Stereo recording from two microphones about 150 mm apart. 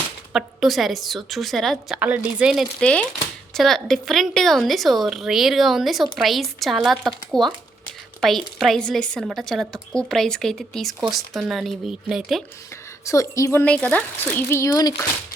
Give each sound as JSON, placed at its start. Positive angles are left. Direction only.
{"t": 0.3, "sound": "a woman's voice", "side_deg": 0}
{"t": 2.0, "sound": "a woman's voice", "side_deg": -10}
{"t": 2.8, "sound": "a woman's voice", "side_deg": 10}
{"t": 13.1, "sound": "speech", "side_deg": 20}